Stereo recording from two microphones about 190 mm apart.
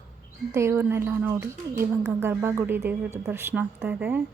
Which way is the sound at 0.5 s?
15° right (ahead or behind).